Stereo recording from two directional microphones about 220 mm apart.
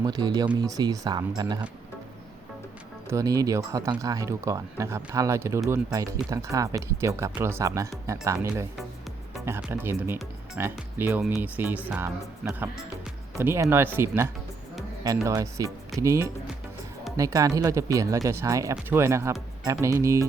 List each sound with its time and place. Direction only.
0.0 s speech: 20° right (ahead or behind)
3.1 s speech: 15° right (ahead or behind)